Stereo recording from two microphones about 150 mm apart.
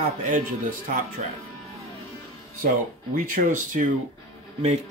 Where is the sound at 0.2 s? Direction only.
60° right (ahead or behind).